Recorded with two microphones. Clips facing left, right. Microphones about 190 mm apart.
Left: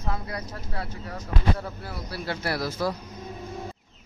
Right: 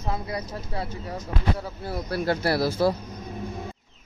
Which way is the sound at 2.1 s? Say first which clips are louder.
Right 8 dB; 55° right (ahead or behind).